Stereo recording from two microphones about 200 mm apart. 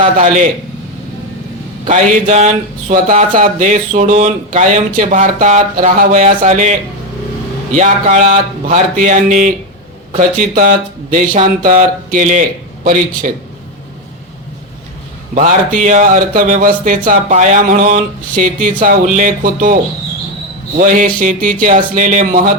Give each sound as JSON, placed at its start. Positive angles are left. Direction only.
{"t": 0.0, "sound": "speech", "side_deg": -35}
{"t": 1.9, "sound": "speech", "side_deg": -35}
{"t": 7.8, "sound": "a man's voice", "side_deg": -35}
{"t": 15.4, "sound": "speech", "side_deg": -35}